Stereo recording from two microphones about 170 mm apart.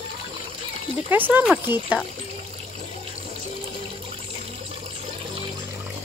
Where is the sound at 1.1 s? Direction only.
10° right (ahead or behind).